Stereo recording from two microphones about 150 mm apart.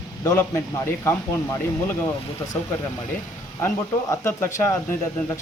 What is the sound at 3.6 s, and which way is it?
Speech, 15° left (ahead or behind).